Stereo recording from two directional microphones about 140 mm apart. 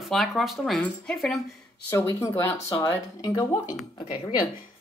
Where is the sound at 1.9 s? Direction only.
20° left (ahead or behind).